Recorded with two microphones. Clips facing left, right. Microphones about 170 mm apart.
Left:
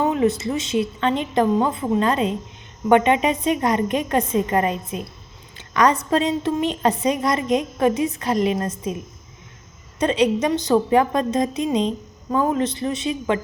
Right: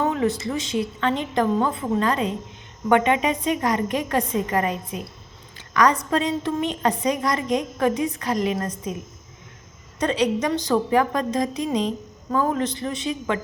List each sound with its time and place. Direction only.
0.0 s a woman's voice: 20° left (ahead or behind)
10.0 s a woman's voice: 20° left (ahead or behind)